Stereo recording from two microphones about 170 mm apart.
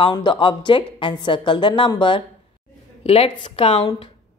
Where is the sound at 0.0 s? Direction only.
30° left (ahead or behind).